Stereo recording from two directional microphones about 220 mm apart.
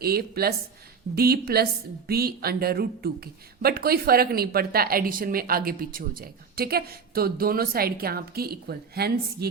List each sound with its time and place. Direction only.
0.0 s speech: 45° right (ahead or behind)